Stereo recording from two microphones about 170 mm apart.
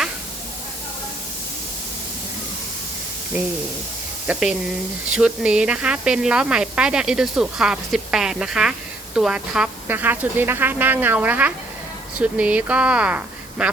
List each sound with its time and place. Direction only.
4.3 s a woman's voice: 5° right (ahead or behind)